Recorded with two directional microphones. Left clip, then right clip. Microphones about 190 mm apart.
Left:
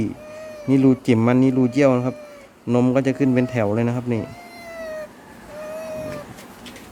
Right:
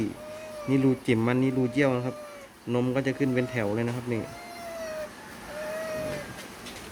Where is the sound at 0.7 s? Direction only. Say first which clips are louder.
Left 8 dB; 40° left (ahead or behind).